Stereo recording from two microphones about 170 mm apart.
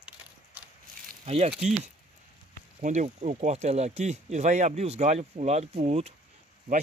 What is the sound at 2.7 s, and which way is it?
Speech, 40° right (ahead or behind).